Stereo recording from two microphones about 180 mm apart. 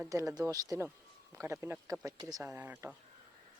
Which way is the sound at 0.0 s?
15° right (ahead or behind).